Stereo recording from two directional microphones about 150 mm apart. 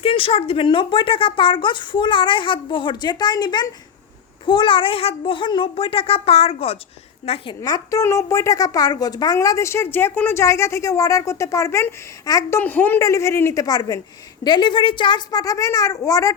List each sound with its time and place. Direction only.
0.0 s a woman's voice: 40° left (ahead or behind)
7.6 s a woman's voice: 25° left (ahead or behind)